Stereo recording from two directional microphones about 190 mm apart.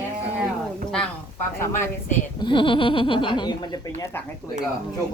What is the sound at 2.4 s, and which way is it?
Speech, 25° left (ahead or behind).